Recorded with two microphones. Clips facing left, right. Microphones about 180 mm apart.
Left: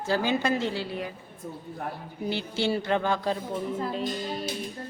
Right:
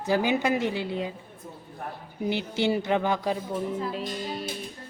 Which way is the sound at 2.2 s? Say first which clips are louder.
Right 2 dB; 15° right (ahead or behind).